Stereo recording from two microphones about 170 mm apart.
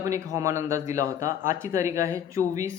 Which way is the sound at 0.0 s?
20° right (ahead or behind).